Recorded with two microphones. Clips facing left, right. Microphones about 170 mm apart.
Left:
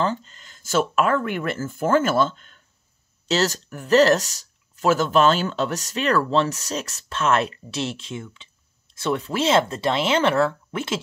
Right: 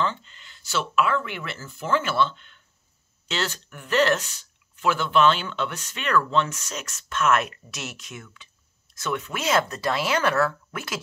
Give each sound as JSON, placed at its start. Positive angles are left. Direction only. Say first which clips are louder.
{"t": 0.0, "sound": "speech", "louder": "left 3 dB", "side_deg": 40}